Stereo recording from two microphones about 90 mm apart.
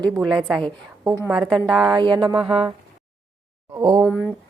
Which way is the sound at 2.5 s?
90° right.